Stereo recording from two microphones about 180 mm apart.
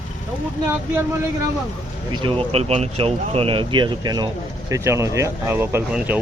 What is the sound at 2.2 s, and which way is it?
Speech, 35° right (ahead or behind).